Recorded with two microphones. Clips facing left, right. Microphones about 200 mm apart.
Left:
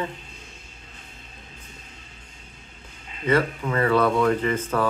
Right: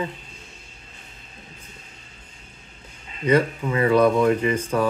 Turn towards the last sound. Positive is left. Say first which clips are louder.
# right 2 dB
turn(degrees=-15)  # may be behind; listen again after turning